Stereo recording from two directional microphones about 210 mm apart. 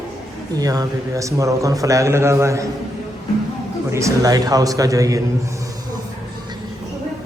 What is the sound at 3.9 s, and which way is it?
A man's voice, 15° right (ahead or behind).